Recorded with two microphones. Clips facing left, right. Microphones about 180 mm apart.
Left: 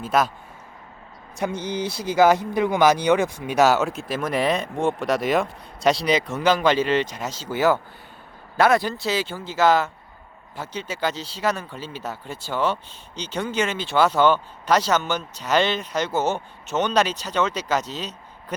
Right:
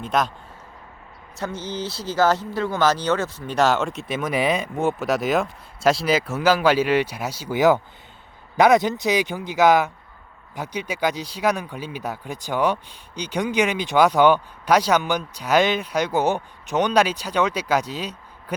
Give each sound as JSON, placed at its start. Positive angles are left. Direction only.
{"t": 0.0, "sound": "speech", "side_deg": 5}
{"t": 1.4, "sound": "speech", "side_deg": 15}